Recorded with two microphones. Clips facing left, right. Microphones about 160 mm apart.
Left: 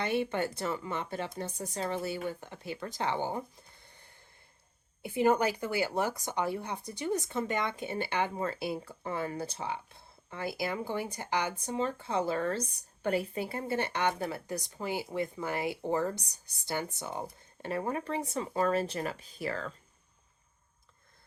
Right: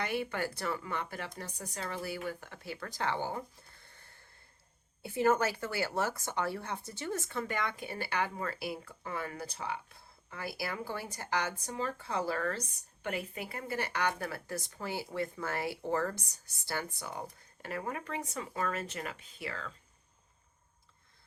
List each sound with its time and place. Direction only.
0.0 s speech: 25° left (ahead or behind)
3.8 s wheeze: 15° left (ahead or behind)
5.0 s speech: 15° left (ahead or behind); by 19.7 s 40° left (ahead or behind)